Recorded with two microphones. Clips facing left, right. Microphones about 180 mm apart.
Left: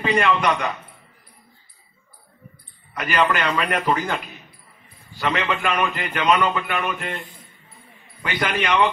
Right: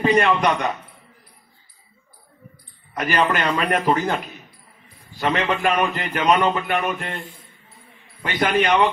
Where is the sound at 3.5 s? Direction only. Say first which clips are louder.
Right 2 dB; 25° right (ahead or behind).